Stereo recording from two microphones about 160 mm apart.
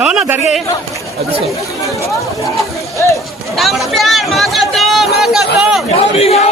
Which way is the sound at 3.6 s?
Centre (ahead or behind).